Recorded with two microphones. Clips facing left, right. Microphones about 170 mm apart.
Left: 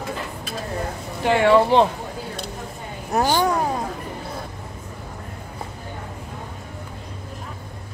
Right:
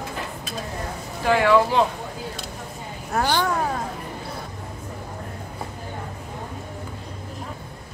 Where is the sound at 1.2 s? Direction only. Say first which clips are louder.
Left 2 dB; 25° left (ahead or behind).